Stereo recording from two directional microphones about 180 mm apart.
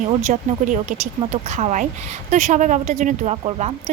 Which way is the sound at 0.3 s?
45° right (ahead or behind).